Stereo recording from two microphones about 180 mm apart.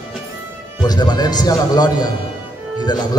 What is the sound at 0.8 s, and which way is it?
A man's voice, 25° left (ahead or behind).